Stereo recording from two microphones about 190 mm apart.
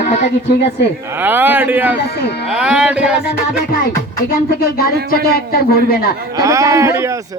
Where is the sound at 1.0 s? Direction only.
10° right (ahead or behind).